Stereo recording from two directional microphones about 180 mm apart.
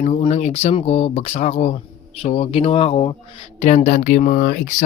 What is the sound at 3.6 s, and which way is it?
Speech, 40° left (ahead or behind).